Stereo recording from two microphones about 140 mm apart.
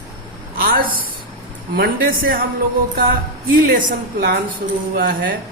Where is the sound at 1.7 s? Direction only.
90° right.